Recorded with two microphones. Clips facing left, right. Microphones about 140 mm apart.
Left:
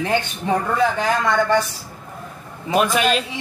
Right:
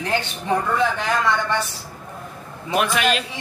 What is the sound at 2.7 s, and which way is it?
Speech, 25° left (ahead or behind).